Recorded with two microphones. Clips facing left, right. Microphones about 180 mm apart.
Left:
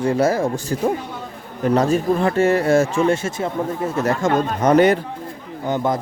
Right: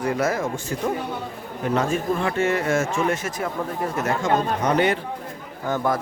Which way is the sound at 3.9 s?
35° left (ahead or behind).